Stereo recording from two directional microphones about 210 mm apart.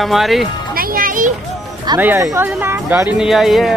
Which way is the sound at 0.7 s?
45° right (ahead or behind).